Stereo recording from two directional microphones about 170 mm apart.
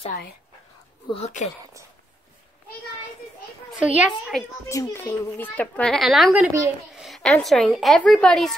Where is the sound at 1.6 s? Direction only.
20° right (ahead or behind).